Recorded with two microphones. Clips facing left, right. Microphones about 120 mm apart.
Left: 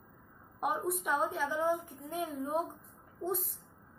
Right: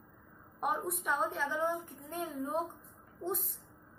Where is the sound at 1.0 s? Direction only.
5° left (ahead or behind).